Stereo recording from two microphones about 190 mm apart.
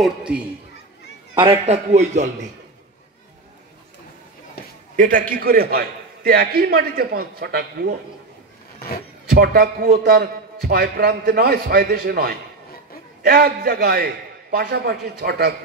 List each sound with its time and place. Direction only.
0.0 s a man's voice: 5° right (ahead or behind)
1.4 s a man's voice: 30° right (ahead or behind)
4.9 s a man's voice: 45° right (ahead or behind)
9.3 s a man's voice: 55° right (ahead or behind)